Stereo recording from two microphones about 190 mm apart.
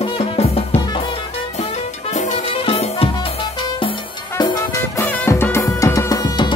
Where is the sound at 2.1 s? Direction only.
40° left (ahead or behind).